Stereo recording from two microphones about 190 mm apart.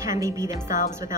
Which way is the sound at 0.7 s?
40° left (ahead or behind).